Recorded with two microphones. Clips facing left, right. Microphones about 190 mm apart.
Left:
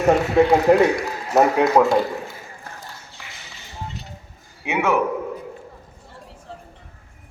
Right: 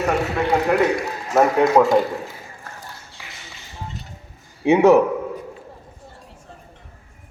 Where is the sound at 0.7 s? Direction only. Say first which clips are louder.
Left 4 dB; 25° left (ahead or behind).